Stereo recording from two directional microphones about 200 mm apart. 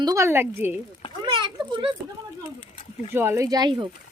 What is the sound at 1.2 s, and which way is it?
Speech, 20° right (ahead or behind).